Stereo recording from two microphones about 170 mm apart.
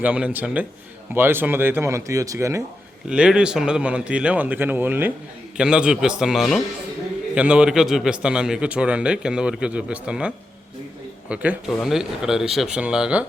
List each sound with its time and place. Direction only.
0.0 s a man's voice: 10° right (ahead or behind)
3.1 s a man's voice: 5° right (ahead or behind)